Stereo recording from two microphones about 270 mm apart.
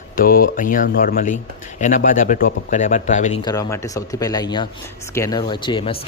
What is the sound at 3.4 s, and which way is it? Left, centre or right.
A man's voice, centre.